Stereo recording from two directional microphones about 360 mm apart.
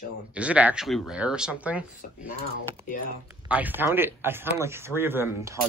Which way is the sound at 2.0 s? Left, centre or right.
Left.